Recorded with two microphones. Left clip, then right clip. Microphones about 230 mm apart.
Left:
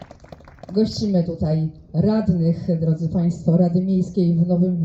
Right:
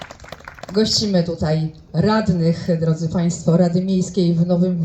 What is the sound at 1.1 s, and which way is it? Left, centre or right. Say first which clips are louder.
Speech: right 3 dB; centre.